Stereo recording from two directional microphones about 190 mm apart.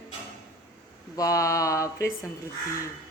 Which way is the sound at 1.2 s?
15° left (ahead or behind).